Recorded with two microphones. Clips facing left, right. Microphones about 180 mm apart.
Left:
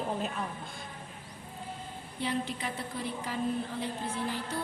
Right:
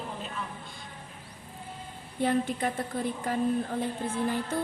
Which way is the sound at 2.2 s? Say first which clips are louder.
Right 7 dB; 50° right (ahead or behind).